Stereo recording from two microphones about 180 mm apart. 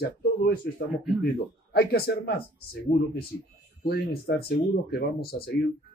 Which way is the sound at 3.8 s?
60° left (ahead or behind).